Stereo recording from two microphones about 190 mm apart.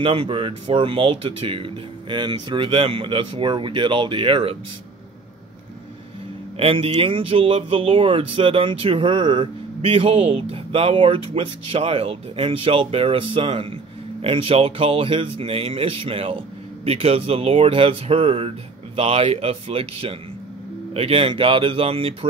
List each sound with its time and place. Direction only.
0.0 s speech: 25° right (ahead or behind)
6.6 s speech: 30° right (ahead or behind)